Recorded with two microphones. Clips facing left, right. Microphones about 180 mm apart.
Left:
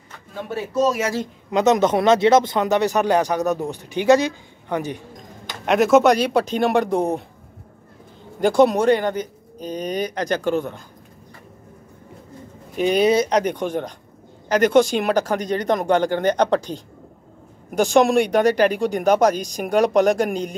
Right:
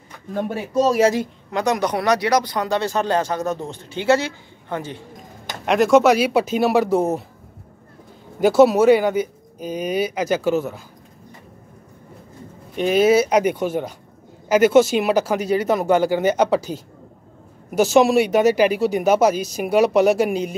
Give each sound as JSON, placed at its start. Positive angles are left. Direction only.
{"t": 0.8, "sound": "speech", "side_deg": -35}
{"t": 1.5, "sound": "speech", "side_deg": 20}
{"t": 5.7, "sound": "speech", "side_deg": 0}
{"t": 8.4, "sound": "speech", "side_deg": -5}
{"t": 12.7, "sound": "speech", "side_deg": 0}